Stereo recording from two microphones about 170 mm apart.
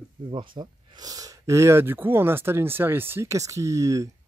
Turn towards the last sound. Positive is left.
turn(degrees=-20)  # may be behind; listen again after turning